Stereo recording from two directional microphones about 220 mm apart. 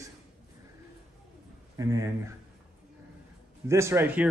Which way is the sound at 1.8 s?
15° right (ahead or behind).